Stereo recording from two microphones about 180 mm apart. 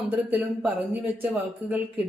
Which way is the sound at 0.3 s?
10° right (ahead or behind).